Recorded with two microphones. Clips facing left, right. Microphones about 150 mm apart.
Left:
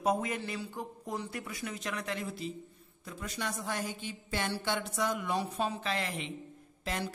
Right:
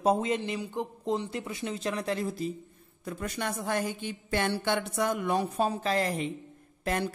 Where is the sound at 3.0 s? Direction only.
60° right (ahead or behind); by 6.3 s 40° right (ahead or behind).